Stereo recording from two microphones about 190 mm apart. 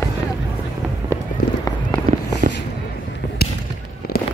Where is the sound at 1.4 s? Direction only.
50° left (ahead or behind).